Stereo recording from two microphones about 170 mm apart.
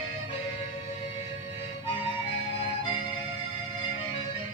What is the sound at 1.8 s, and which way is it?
Music, 30° left (ahead or behind).